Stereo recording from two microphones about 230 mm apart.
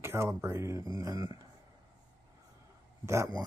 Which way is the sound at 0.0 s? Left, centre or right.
Centre.